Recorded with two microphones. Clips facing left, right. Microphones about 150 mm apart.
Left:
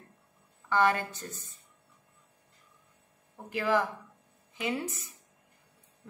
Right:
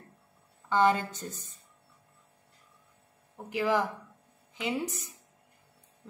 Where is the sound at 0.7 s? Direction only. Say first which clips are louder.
Right 2 dB; 20° right (ahead or behind).